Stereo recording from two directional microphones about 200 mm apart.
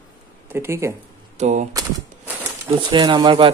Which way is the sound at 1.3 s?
35° right (ahead or behind).